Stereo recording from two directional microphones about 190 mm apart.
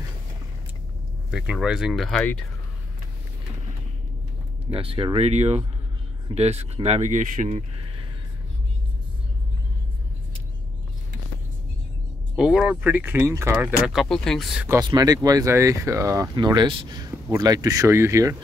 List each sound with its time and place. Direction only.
1.3 s speech: 5° right (ahead or behind)
4.6 s speech: 30° right (ahead or behind)
12.4 s speech: 5° right (ahead or behind)
14.7 s speech: 20° right (ahead or behind)